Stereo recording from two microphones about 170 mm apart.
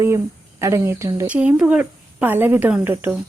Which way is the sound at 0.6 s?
15° right (ahead or behind).